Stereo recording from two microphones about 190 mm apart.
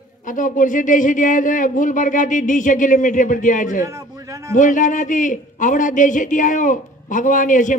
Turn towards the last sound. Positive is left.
turn(degrees=45)  # may be behind; listen again after turning